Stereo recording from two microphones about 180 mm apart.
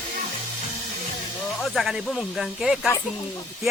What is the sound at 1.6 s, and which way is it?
Speech, centre (ahead or behind).